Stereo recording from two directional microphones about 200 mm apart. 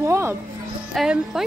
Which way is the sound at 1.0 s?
Centre (ahead or behind).